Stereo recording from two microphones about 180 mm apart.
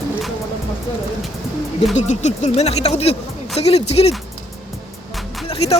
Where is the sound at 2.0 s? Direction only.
40° left (ahead or behind).